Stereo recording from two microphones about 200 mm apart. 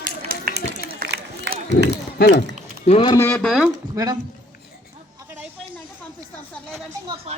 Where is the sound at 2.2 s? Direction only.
50° left (ahead or behind).